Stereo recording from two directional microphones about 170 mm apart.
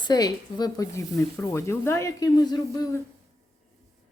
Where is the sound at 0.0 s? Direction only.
25° left (ahead or behind).